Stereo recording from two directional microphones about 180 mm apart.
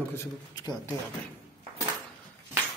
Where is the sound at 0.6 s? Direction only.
20° left (ahead or behind).